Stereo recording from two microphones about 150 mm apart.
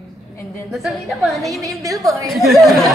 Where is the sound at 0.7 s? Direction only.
Centre (ahead or behind).